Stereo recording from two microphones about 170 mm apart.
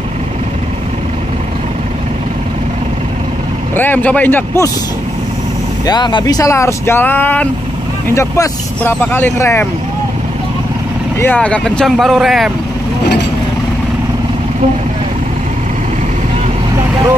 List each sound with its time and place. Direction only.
3.7 s speech: 10° left (ahead or behind)
5.9 s speech: 25° left (ahead or behind)
11.1 s speech: 10° left (ahead or behind)